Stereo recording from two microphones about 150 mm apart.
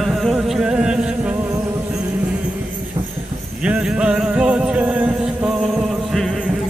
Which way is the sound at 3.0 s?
40° right (ahead or behind).